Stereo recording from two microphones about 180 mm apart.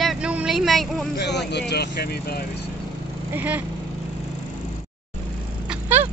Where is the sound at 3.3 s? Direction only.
10° right (ahead or behind).